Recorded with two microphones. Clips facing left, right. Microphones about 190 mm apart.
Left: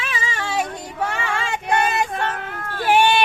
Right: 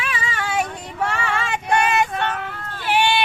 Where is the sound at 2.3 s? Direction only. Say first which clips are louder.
Even; 45° left (ahead or behind).